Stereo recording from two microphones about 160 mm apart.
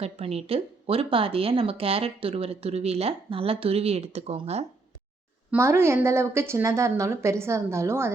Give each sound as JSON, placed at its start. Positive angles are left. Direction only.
{"t": 0.0, "sound": "speech", "side_deg": -40}
{"t": 5.5, "sound": "a woman's voice", "side_deg": -15}